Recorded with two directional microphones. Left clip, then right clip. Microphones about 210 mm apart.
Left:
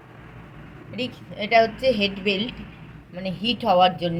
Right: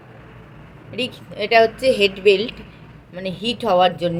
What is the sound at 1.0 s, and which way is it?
A woman's voice, 60° right (ahead or behind).